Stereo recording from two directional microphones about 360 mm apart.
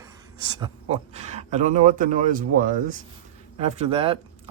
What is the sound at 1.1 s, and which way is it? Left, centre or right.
Speech, centre.